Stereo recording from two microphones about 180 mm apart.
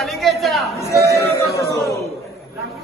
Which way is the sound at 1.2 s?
15° left (ahead or behind).